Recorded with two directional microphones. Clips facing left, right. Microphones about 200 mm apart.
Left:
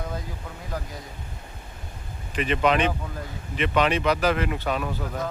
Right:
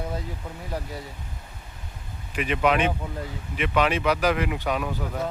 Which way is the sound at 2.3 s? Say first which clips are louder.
Left 1 dB; 10° right (ahead or behind).